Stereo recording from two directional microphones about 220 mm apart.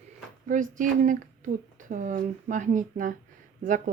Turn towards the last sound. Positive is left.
turn(degrees=-35)  # may be behind; listen again after turning